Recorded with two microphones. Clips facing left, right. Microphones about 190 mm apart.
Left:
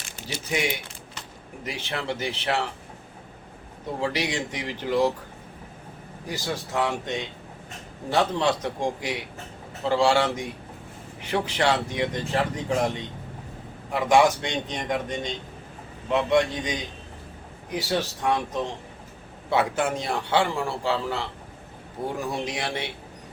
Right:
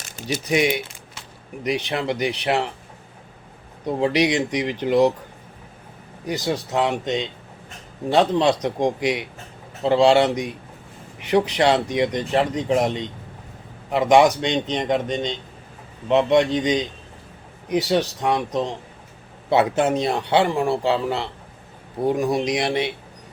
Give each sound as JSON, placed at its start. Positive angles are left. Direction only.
{"t": 0.5, "sound": "speech", "side_deg": -20}
{"t": 4.0, "sound": "speech", "side_deg": -20}
{"t": 6.2, "sound": "speech", "side_deg": -20}